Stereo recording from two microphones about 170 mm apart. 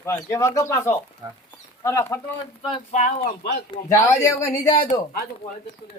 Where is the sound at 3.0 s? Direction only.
55° left (ahead or behind).